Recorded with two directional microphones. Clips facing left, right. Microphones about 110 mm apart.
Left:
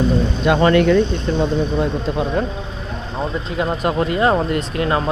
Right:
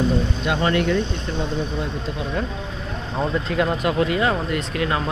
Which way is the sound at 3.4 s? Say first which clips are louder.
Even; 20° left (ahead or behind).